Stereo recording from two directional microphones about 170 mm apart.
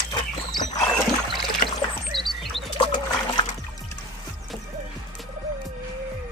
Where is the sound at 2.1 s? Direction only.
Centre (ahead or behind).